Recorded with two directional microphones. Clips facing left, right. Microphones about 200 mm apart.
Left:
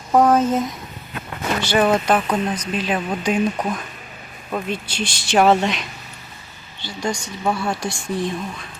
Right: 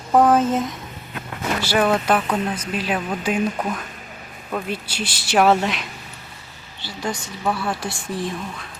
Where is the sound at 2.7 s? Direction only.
5° right (ahead or behind).